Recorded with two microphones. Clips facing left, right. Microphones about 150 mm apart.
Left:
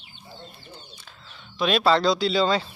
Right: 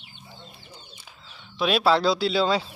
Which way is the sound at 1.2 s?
5° right (ahead or behind).